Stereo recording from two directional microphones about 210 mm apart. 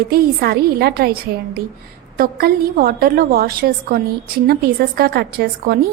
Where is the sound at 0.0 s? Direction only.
45° right (ahead or behind).